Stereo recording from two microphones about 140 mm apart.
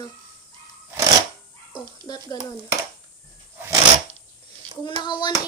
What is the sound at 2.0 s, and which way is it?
Speech, 30° left (ahead or behind).